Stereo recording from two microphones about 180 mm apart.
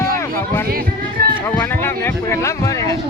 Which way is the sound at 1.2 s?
60° right (ahead or behind).